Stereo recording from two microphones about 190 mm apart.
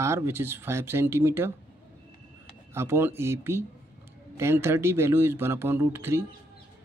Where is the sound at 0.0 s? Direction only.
15° right (ahead or behind).